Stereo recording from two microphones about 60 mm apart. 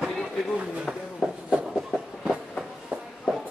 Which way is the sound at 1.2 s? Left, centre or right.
Centre.